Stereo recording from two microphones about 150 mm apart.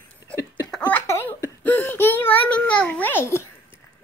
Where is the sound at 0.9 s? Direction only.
15° left (ahead or behind).